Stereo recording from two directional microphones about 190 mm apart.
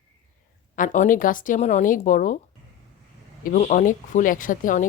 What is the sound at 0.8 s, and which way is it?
Speech, 45° left (ahead or behind).